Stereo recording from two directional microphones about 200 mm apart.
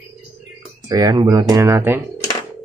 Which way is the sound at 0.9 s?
20° right (ahead or behind).